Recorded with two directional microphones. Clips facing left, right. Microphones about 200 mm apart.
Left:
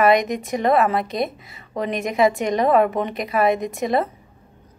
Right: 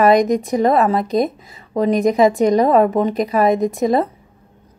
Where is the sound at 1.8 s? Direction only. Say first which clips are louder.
Right 6 dB; 35° right (ahead or behind).